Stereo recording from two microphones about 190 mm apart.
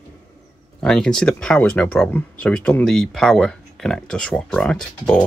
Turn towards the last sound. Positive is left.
turn(degrees=5)  # may be behind; listen again after turning